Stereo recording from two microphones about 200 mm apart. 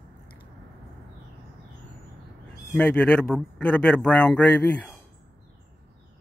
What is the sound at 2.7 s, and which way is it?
Speech, 10° left (ahead or behind).